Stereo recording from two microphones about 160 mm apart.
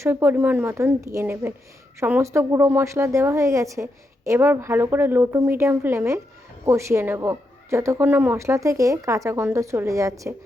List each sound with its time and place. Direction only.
0.0 s a woman's voice: 15° right (ahead or behind)